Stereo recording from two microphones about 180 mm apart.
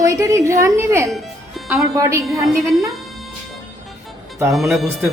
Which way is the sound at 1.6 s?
15° right (ahead or behind).